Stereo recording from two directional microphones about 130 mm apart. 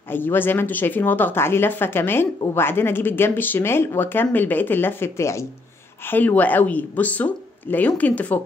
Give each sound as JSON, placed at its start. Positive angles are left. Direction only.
{"t": 0.1, "sound": "speech", "side_deg": 15}